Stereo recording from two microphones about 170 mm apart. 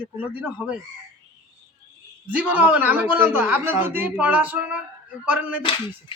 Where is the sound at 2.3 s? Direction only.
10° right (ahead or behind).